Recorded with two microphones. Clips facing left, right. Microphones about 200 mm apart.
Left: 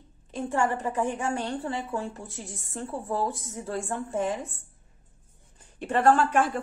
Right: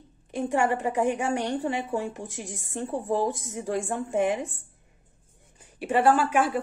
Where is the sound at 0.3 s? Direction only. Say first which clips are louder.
Right 2 dB; 15° right (ahead or behind).